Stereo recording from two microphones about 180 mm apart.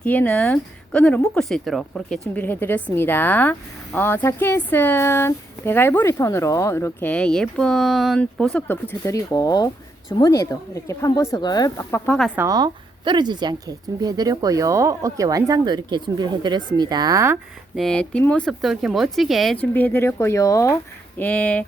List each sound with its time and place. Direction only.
0.0 s speech: 10° left (ahead or behind)
12.4 s a woman's voice: 20° right (ahead or behind)
17.7 s speech: 5° left (ahead or behind)
19.7 s speech: 10° left (ahead or behind)